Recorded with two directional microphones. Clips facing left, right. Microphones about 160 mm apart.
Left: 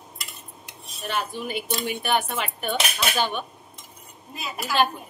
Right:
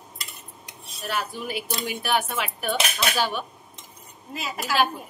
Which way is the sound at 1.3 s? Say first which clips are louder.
Left 2 dB; 5° right (ahead or behind).